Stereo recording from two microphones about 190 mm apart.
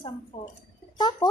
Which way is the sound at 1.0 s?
20° left (ahead or behind).